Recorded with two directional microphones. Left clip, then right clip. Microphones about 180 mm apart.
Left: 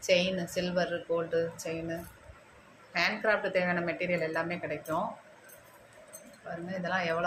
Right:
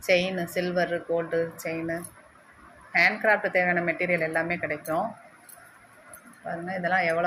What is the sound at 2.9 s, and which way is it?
A woman's voice, 20° right (ahead or behind).